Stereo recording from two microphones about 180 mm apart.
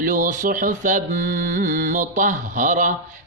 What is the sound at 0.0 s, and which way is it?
Mantra, 45° right (ahead or behind).